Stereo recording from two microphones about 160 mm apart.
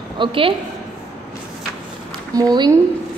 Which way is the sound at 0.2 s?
35° right (ahead or behind).